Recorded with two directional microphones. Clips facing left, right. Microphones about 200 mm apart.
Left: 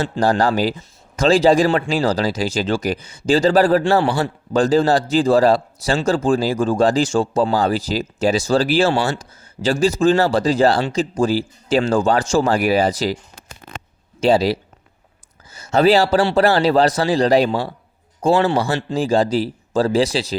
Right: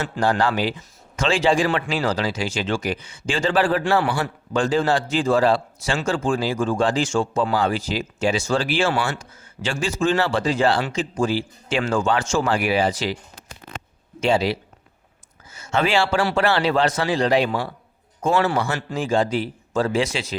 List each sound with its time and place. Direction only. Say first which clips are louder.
0.0 s a man's voice: left 4 dB; 40° left (ahead or behind)
14.2 s a man's voice: left 5 dB; 35° left (ahead or behind)